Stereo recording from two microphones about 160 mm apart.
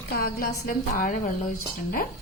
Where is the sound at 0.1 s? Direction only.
70° left (ahead or behind).